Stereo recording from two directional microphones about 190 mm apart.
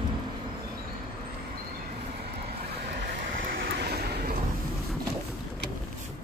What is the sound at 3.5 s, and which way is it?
Vehicle, 55° right (ahead or behind).